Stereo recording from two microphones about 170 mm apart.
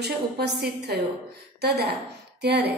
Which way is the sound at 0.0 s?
75° right (ahead or behind).